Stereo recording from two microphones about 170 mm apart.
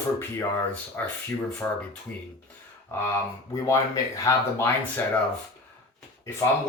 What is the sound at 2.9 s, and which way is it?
Speech, 15° left (ahead or behind).